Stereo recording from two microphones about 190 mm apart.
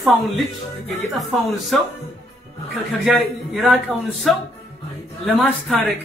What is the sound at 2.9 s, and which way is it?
Speech, centre (ahead or behind).